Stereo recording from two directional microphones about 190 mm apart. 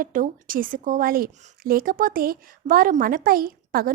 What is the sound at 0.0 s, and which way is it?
A woman's voice, 45° right (ahead or behind).